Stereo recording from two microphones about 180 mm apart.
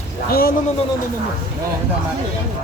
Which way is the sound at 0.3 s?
55° left (ahead or behind).